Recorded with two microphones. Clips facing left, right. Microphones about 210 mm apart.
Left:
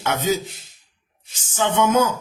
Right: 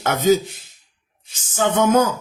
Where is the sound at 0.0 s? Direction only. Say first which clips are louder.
Right 5 dB; 45° right (ahead or behind).